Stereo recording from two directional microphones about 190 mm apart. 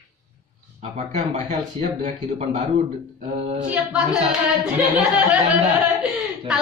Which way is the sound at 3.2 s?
35° right (ahead or behind).